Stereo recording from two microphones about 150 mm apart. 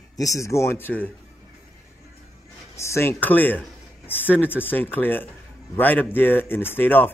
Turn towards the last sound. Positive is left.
turn(degrees=15)  # may be behind; listen again after turning